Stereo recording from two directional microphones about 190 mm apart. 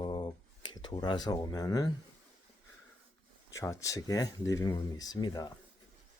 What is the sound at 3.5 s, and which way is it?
Speech, 15° left (ahead or behind).